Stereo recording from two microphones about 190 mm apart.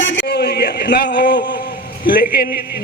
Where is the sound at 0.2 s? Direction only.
60° left (ahead or behind).